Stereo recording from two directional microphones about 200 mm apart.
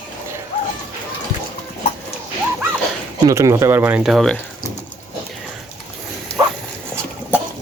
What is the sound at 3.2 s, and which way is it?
Speech, 15° right (ahead or behind).